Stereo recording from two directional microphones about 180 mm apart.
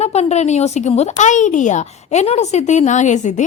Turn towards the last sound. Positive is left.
turn(degrees=40)  # may be behind; listen again after turning